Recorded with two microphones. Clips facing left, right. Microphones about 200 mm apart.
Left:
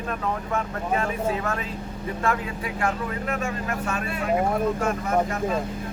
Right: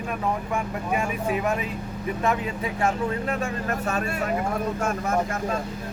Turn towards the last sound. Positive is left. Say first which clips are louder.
# right 2 dB
turn(degrees=-40)  # may be behind; listen again after turning